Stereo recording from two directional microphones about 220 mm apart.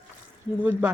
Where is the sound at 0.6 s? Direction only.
5° right (ahead or behind).